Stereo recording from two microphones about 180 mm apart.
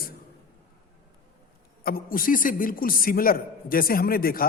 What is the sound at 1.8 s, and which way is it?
A man's voice, 55° left (ahead or behind).